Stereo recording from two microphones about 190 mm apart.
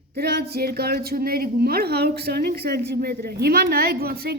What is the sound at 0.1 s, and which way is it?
A woman's voice, 55° right (ahead or behind).